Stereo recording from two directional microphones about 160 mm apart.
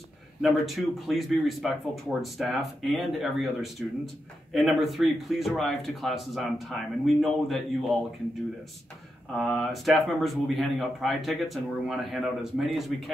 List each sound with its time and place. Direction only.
0.4 s speech: centre (ahead or behind)
9.4 s speech: centre (ahead or behind)